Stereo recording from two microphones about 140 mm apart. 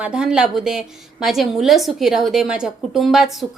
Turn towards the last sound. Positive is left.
turn(degrees=0)  # may be behind; listen again after turning